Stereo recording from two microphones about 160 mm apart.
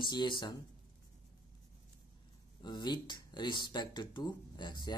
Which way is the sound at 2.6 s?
25° left (ahead or behind).